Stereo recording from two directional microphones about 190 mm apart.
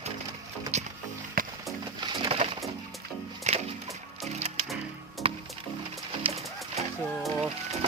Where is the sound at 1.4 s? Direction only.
50° right (ahead or behind).